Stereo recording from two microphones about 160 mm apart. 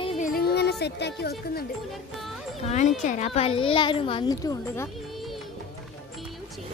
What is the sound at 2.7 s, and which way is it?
A child's voice, 45° left (ahead or behind).